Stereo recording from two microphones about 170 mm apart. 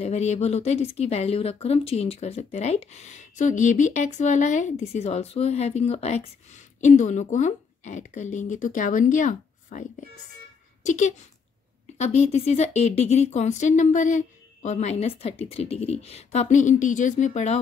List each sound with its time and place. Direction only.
0.0 s a woman's voice: 40° left (ahead or behind)